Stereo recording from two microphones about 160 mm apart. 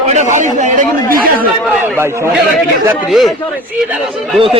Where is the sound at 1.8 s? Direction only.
15° right (ahead or behind).